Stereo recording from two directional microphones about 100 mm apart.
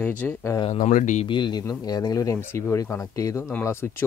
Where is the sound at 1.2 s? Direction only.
50° left (ahead or behind); by 3.9 s 25° left (ahead or behind).